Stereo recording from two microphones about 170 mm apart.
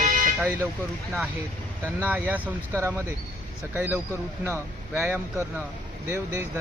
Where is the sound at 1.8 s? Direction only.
10° right (ahead or behind).